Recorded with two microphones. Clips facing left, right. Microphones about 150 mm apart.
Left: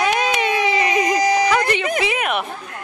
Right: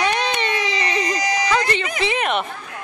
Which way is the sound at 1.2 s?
55° left (ahead or behind).